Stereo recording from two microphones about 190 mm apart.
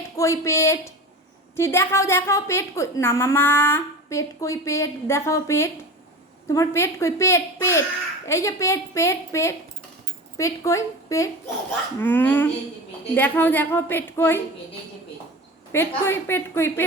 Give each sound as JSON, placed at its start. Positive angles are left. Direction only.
{"t": 0.2, "sound": "a woman's voice", "side_deg": 15}
{"t": 15.7, "sound": "a woman's voice", "side_deg": 10}